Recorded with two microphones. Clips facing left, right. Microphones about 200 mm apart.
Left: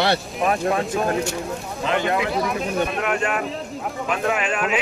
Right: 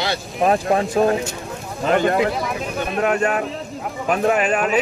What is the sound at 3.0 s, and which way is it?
Speech, 40° right (ahead or behind).